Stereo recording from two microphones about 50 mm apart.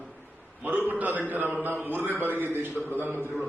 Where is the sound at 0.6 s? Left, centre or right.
Right.